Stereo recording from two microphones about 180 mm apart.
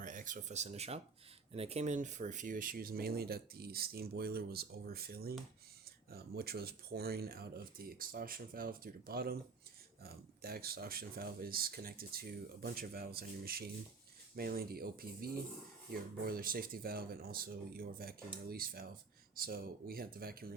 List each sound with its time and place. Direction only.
0.0 s speech: 45° right (ahead or behind)